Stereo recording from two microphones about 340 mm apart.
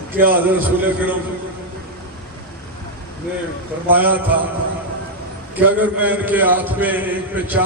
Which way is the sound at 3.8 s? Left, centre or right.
Centre.